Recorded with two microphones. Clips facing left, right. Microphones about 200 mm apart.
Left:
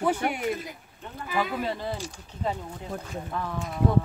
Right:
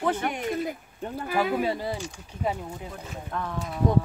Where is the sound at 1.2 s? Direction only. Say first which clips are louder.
Right 3 dB; 45° right (ahead or behind).